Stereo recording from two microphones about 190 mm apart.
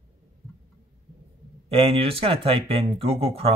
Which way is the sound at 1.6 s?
30° right (ahead or behind).